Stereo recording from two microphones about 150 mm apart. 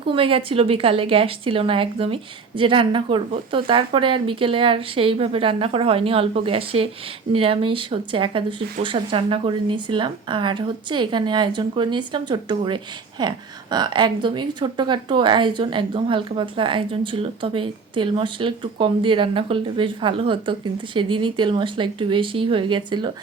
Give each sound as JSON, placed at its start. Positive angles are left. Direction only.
{"t": 0.0, "sound": "speech", "side_deg": -35}